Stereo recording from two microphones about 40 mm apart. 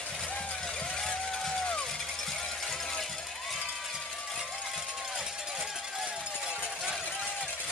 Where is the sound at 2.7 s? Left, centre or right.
Centre.